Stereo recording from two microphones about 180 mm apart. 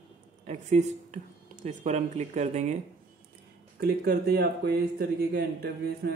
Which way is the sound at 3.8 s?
60° right (ahead or behind).